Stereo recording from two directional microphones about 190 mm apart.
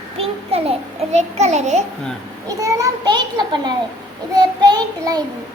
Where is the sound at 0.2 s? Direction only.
30° right (ahead or behind).